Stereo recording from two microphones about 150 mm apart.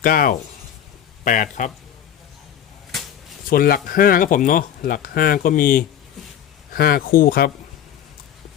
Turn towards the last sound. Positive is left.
turn(degrees=80)